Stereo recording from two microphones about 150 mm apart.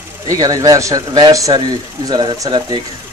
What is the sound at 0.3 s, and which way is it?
Speech, 25° right (ahead or behind).